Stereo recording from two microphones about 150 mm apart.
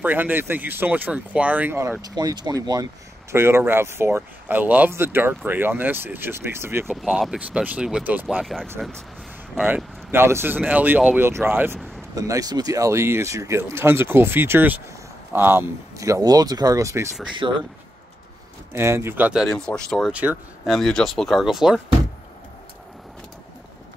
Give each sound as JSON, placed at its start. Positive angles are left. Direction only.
{"t": 0.0, "sound": "speech", "side_deg": -15}
{"t": 6.9, "sound": "speech", "side_deg": 0}
{"t": 8.4, "sound": "speech", "side_deg": 5}
{"t": 9.7, "sound": "speech", "side_deg": -15}
{"t": 17.4, "sound": "speech", "side_deg": -35}
{"t": 18.7, "sound": "speech", "side_deg": -15}